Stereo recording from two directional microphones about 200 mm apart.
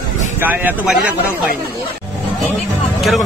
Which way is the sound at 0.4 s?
10° right (ahead or behind).